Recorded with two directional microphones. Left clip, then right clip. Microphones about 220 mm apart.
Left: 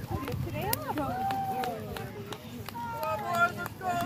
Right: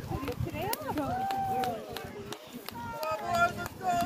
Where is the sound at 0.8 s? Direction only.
50° right (ahead or behind).